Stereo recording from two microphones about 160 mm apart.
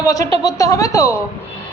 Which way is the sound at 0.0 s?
20° left (ahead or behind).